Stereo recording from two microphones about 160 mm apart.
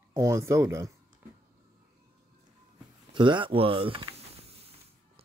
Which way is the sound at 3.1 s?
30° right (ahead or behind).